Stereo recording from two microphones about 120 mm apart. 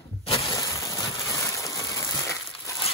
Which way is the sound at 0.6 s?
25° left (ahead or behind).